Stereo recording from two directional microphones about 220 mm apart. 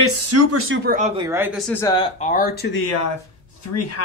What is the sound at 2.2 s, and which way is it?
Speech, 35° left (ahead or behind).